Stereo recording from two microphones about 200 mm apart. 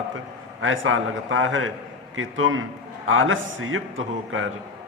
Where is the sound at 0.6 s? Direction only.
80° right.